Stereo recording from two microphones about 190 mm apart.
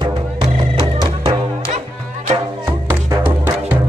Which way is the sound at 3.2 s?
10° right (ahead or behind).